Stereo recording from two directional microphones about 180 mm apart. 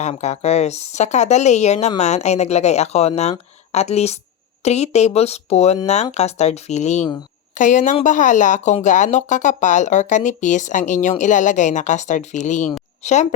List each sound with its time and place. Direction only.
0.0 s a woman's voice: 40° left (ahead or behind)